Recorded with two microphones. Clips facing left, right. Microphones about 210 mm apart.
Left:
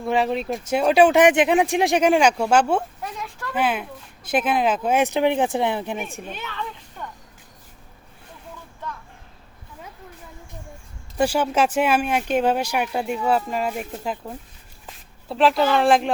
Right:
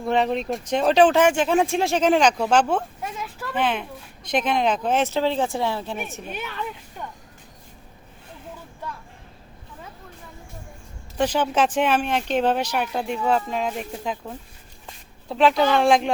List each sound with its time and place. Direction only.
0.0 s speech: centre (ahead or behind)
3.0 s a sound: 5° right (ahead or behind)
3.5 s speech: 5° left (ahead or behind)
6.2 s speech: 10° right (ahead or behind)
11.2 s speech: 10° left (ahead or behind)